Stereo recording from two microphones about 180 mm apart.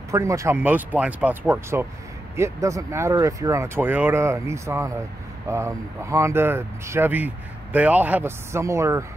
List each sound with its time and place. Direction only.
0.1 s speech: 15° right (ahead or behind)